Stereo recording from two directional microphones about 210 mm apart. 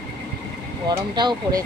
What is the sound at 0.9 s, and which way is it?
Speech, 20° right (ahead or behind).